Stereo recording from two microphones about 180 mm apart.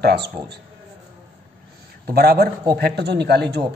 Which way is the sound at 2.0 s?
60° right (ahead or behind).